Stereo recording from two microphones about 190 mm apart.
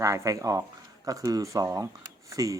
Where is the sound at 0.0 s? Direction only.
15° right (ahead or behind).